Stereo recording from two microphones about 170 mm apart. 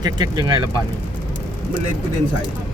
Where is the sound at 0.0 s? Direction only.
25° right (ahead or behind).